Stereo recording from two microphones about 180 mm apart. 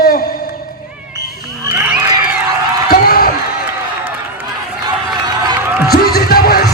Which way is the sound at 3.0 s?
55° left (ahead or behind).